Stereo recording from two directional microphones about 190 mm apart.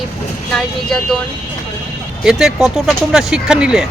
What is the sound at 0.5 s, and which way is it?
Speech, centre (ahead or behind).